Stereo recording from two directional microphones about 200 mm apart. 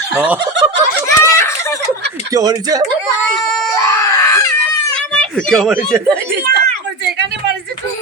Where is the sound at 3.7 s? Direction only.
15° left (ahead or behind).